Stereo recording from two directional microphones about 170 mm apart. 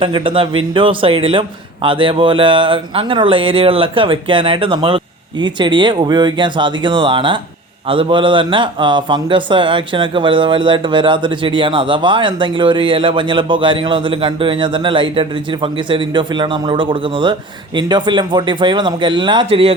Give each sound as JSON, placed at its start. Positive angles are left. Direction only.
{"t": 0.0, "sound": "a man's voice", "side_deg": -30}